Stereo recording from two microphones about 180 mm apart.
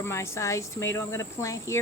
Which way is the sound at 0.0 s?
15° left (ahead or behind).